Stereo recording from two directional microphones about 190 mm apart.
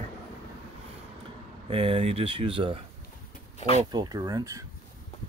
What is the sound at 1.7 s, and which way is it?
Speech, 30° right (ahead or behind).